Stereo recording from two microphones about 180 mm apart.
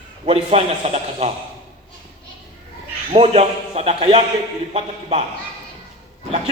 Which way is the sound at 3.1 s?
35° right (ahead or behind).